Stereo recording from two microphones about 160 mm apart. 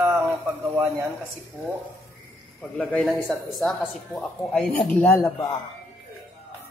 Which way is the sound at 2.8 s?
5° left (ahead or behind).